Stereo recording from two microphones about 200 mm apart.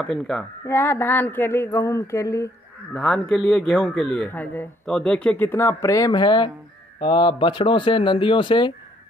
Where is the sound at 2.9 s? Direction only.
Centre (ahead or behind).